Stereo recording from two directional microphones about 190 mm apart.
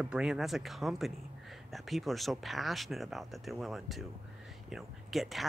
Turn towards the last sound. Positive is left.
turn(degrees=0)  # may be behind; listen again after turning